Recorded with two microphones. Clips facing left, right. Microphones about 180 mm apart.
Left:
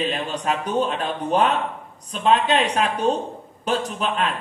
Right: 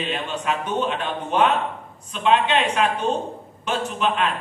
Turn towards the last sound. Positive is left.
turn(degrees=40)  # may be behind; listen again after turning